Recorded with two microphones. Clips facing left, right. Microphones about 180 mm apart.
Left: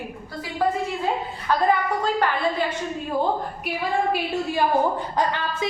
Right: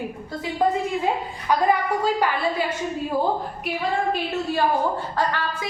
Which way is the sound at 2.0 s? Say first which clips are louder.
Even; 10° right (ahead or behind).